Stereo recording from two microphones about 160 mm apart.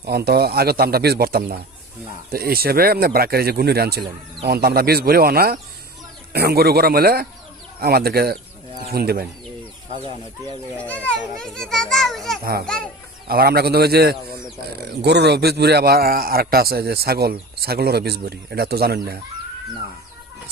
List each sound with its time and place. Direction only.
0.0 s speech: 90° right
10.8 s a child's voice: 10° left (ahead or behind)
13.2 s a man's voice: 70° right (ahead or behind)